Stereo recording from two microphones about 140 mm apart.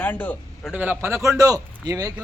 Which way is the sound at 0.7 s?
10° right (ahead or behind).